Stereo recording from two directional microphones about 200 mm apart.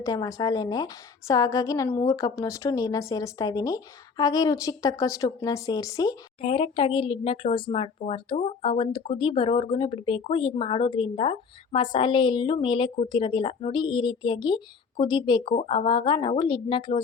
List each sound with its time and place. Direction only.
0.0 s a woman's voice: 15° left (ahead or behind)